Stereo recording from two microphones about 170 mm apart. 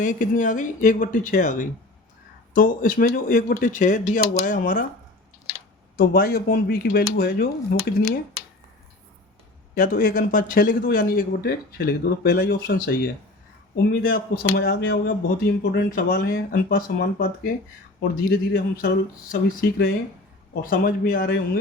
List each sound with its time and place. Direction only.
0.0 s speech: 50° left (ahead or behind)
6.0 s speech: 60° left (ahead or behind)
9.7 s speech: 55° left (ahead or behind)
15.7 s speech: 60° left (ahead or behind)